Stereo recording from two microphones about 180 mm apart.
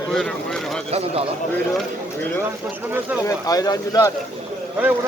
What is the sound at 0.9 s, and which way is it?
Speech, 35° right (ahead or behind).